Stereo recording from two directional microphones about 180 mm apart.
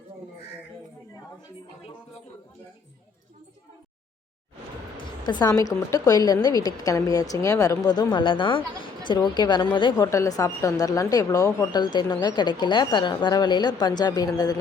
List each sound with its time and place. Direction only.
5.2 s speech: 25° left (ahead or behind)